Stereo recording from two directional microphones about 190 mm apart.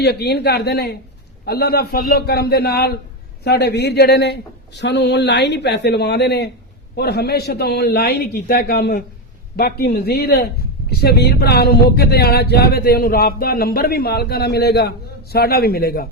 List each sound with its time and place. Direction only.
0.0 s speech: 60° left (ahead or behind)